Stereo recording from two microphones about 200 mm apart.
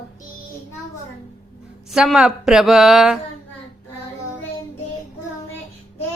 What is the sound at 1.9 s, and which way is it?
Speech, centre (ahead or behind).